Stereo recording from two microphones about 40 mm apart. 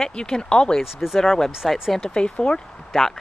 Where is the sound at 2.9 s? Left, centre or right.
Centre.